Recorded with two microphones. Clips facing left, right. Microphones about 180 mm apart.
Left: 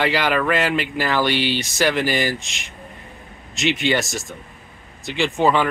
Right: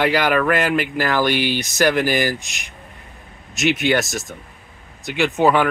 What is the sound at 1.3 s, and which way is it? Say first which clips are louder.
Speech: right 1 dB; 55° right (ahead or behind).